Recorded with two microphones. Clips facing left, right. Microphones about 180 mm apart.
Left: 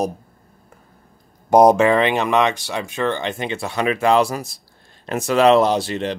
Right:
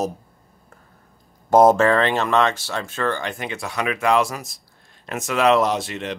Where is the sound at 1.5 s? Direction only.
15° left (ahead or behind).